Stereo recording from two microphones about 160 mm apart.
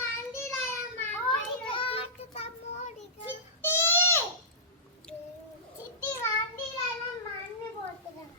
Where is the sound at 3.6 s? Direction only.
15° left (ahead or behind).